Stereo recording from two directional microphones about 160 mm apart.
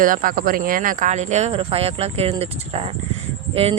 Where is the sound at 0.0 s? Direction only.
60° right (ahead or behind).